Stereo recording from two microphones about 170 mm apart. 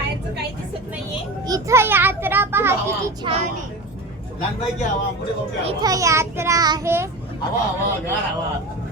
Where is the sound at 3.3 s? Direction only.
30° right (ahead or behind).